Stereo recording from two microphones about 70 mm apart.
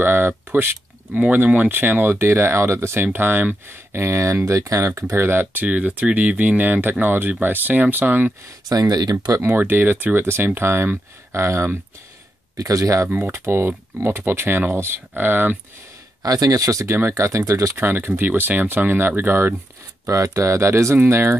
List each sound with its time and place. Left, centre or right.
0.0 s a sound: right
1.1 s speech: centre
5.7 s speech: centre
8.6 s speech: right
9.3 s speech: right
12.5 s speech: right
13.3 s speech: right
16.2 s speech: right
16.8 s speech: right
17.7 s speech: right
20.1 s speech: right